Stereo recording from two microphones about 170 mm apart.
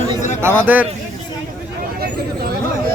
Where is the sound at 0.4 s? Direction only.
10° right (ahead or behind).